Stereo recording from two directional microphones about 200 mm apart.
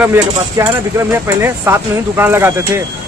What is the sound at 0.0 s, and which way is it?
Speech, 10° right (ahead or behind).